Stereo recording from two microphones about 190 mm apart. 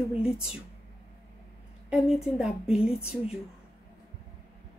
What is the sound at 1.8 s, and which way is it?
A woman's voice, centre (ahead or behind).